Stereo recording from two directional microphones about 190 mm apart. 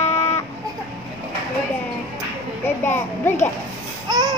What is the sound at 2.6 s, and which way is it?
Speech, 10° left (ahead or behind).